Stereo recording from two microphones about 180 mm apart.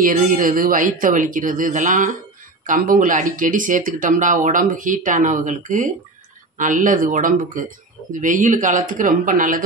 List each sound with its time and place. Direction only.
0.0 s speech: 50° right (ahead or behind)